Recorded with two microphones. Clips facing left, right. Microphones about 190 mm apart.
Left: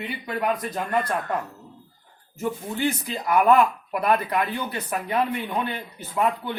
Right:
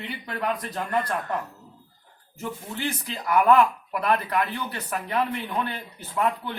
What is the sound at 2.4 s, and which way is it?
Speech, 15° left (ahead or behind).